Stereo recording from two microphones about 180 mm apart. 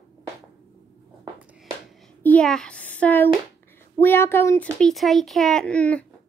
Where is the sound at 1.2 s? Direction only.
5° right (ahead or behind).